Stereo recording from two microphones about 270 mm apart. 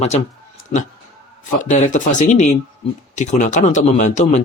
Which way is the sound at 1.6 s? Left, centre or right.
Left.